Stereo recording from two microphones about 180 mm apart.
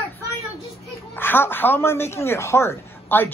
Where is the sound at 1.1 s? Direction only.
10° left (ahead or behind).